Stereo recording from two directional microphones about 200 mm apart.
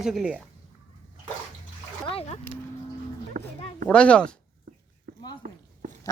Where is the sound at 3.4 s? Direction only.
40° right (ahead or behind).